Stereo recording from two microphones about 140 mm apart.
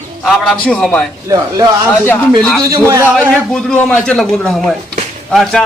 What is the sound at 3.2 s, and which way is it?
Speech, 10° left (ahead or behind).